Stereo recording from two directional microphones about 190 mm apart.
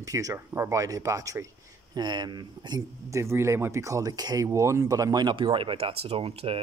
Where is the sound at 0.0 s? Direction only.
15° right (ahead or behind).